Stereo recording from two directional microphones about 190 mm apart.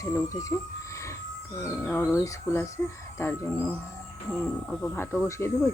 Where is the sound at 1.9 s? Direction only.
15° left (ahead or behind).